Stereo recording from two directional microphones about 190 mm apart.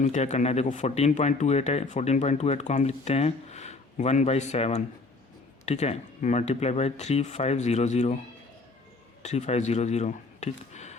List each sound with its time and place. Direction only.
0.0 s speech: 35° left (ahead or behind)
9.2 s speech: 35° left (ahead or behind)